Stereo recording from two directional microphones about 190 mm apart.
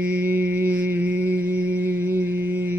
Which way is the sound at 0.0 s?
10° right (ahead or behind).